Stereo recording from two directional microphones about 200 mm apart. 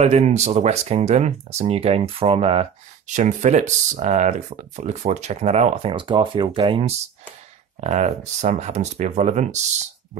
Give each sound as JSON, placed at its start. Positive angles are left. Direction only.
{"t": 0.0, "sound": "speech", "side_deg": -35}